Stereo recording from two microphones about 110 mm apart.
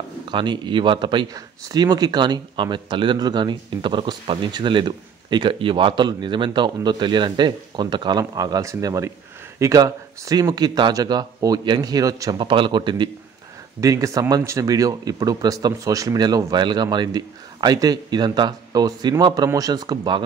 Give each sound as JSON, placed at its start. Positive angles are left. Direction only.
{"t": 0.3, "sound": "a man's voice", "side_deg": -45}
{"t": 12.4, "sound": "a man's voice", "side_deg": -45}
{"t": 13.7, "sound": "speech", "side_deg": -30}